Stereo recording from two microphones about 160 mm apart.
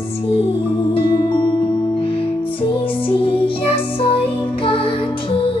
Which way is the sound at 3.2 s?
35° left (ahead or behind).